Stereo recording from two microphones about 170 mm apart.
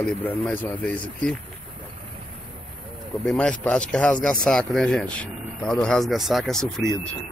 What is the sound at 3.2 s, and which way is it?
Speech, 5° left (ahead or behind).